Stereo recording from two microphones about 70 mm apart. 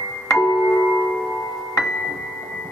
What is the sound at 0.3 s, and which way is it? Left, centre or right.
Music, left.